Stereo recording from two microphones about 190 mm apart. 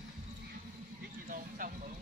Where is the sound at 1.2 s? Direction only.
45° right (ahead or behind).